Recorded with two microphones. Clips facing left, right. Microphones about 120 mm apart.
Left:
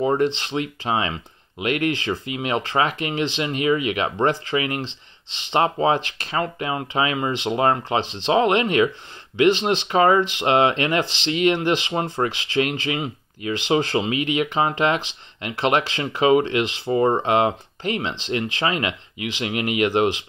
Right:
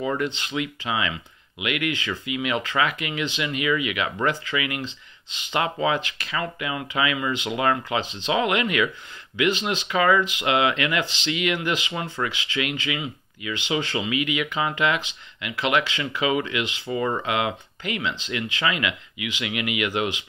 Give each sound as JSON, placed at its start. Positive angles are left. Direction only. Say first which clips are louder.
{"t": 0.0, "sound": "speech", "louder": "left 6 dB", "side_deg": 35}